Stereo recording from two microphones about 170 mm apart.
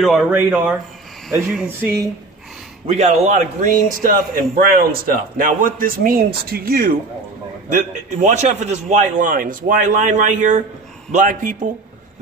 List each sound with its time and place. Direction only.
0.0 s speech: centre (ahead or behind)
1.8 s speech: 15° right (ahead or behind)
2.9 s a man's voice: 40° right (ahead or behind); by 7.0 s 60° right (ahead or behind)
7.7 s a man's voice: 45° right (ahead or behind)